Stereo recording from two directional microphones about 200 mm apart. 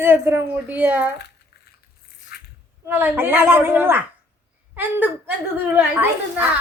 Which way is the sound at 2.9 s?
10° right (ahead or behind).